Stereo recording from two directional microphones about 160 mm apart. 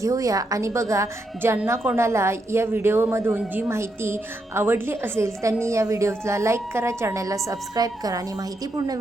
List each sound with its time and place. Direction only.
0.0 s a woman's voice: 20° right (ahead or behind)